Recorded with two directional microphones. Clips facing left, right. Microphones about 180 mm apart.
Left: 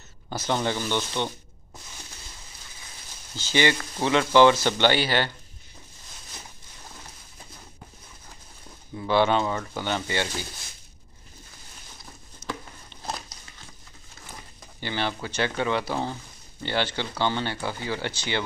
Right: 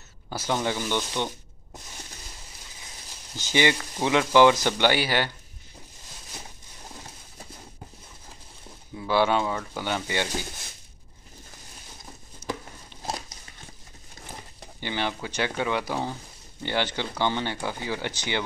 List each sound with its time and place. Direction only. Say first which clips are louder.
0.3 s speech: left 1 dB; 10° right (ahead or behind)
3.3 s speech: even; 15° right (ahead or behind)
8.9 s speech: left 1 dB; 10° right (ahead or behind)
12.9 s a sound: right 2 dB; 10° right (ahead or behind)
14.8 s speech: even; 15° right (ahead or behind)